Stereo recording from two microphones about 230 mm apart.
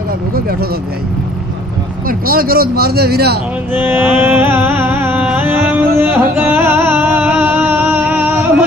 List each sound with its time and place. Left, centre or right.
0.3 s speech: right
2.0 s speech: right
3.7 s music: centre